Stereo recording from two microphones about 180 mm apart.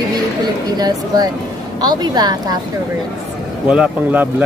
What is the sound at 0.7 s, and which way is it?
A woman's voice, 20° right (ahead or behind).